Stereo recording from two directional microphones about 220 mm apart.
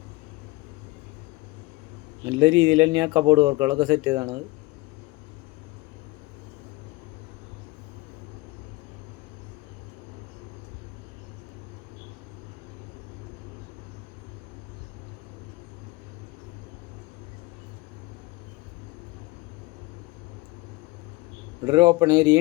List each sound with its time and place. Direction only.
2.4 s speech: 20° right (ahead or behind)
21.7 s speech: 20° right (ahead or behind)